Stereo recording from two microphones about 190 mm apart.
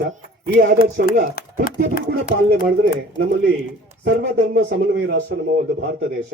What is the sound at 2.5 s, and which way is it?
Speech, 65° right (ahead or behind).